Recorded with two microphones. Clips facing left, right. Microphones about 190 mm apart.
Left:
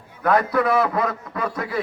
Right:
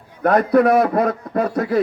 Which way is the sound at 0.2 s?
50° right (ahead or behind).